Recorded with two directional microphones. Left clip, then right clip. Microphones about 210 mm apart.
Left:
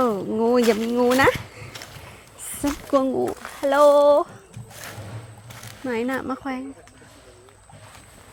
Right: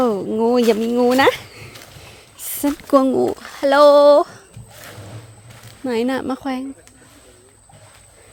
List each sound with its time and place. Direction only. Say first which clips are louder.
0.0 s a sound: right 4 dB; 30° right (ahead or behind)
0.7 s speech: right 4 dB; 25° right (ahead or behind); by 4.4 s 45° right (ahead or behind)
5.8 s speech: right 5 dB; 40° right (ahead or behind)